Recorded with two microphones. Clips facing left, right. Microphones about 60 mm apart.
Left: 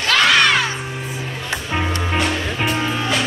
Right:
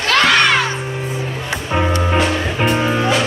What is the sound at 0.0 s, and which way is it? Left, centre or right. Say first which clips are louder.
Music: right 2 dB; centre.